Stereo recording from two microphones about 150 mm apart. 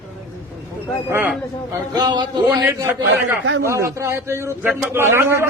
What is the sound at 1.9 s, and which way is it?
Speech, 30° right (ahead or behind).